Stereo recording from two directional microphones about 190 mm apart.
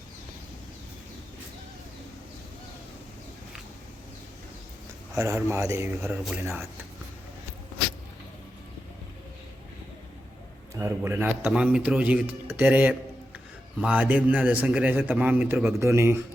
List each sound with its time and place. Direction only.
5.1 s a man's voice: 15° right (ahead or behind)
10.8 s a man's voice: 15° right (ahead or behind)